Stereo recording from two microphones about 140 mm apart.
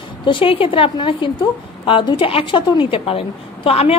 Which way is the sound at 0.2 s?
35° left (ahead or behind).